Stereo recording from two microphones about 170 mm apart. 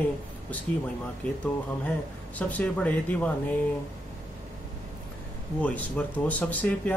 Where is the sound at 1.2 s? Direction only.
10° left (ahead or behind).